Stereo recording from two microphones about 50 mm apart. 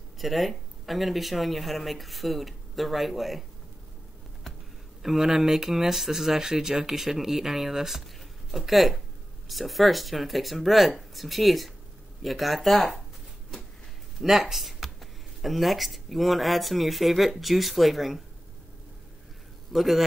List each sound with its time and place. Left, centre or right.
0.2 s speech: centre
5.0 s speech: centre
14.2 s speech: centre
19.7 s speech: centre